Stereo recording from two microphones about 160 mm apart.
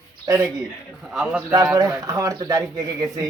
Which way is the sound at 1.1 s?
5° right (ahead or behind).